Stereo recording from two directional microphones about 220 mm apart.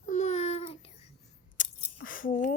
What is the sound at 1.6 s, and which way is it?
Scissors, 35° left (ahead or behind).